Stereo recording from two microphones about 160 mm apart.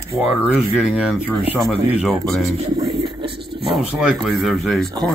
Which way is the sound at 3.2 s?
90° right.